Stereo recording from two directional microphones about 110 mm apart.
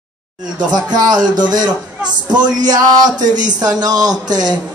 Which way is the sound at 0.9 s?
40° right (ahead or behind).